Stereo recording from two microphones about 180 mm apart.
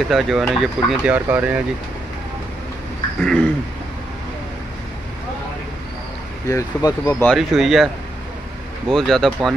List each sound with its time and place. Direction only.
0.1 s speech: centre (ahead or behind)
3.2 s speech: 10° left (ahead or behind)
6.5 s speech: 15° left (ahead or behind)
7.2 s speech: centre (ahead or behind)
8.9 s speech: centre (ahead or behind)